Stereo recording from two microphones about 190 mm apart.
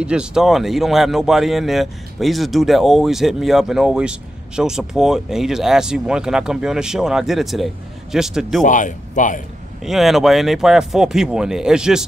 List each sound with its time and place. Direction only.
0.0 s speech: 5° right (ahead or behind)
8.6 s speech: 40° left (ahead or behind)
9.8 s speech: centre (ahead or behind)